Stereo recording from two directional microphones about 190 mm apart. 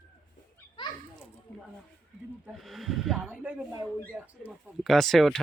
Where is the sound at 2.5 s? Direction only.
Centre (ahead or behind).